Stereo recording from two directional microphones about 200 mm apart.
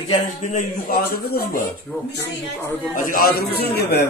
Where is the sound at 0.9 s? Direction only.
50° left (ahead or behind).